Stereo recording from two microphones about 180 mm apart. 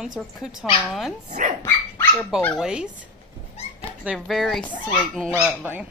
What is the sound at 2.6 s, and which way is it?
Speech, 5° right (ahead or behind).